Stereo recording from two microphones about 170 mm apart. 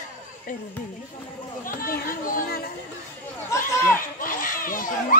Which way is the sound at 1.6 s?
55° left (ahead or behind).